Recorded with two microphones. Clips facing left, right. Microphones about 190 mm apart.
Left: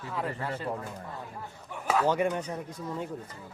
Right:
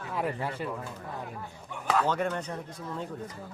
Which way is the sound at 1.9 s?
10° left (ahead or behind).